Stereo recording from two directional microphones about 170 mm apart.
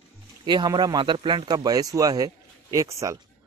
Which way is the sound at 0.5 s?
25° right (ahead or behind).